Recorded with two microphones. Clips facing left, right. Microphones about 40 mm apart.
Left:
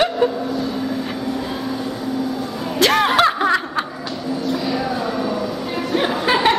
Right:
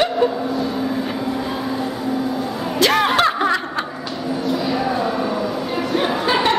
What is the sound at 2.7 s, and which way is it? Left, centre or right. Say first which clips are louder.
Snicker: left 1 dB; centre.